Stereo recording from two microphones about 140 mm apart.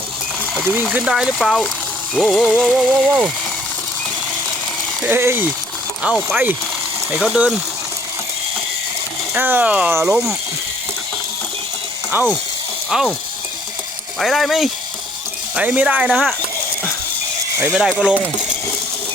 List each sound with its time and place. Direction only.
0.7 s music: 10° right (ahead or behind)
5.0 s speech: 15° right (ahead or behind)
6.0 s music: 5° right (ahead or behind)
7.1 s speech: 5° right (ahead or behind)
9.3 s speech: 15° right (ahead or behind)
12.9 s music: 5° right (ahead or behind)
14.2 s music: centre (ahead or behind)
15.5 s speech: 10° right (ahead or behind)
16.0 s music: centre (ahead or behind)
17.6 s music: 5° right (ahead or behind)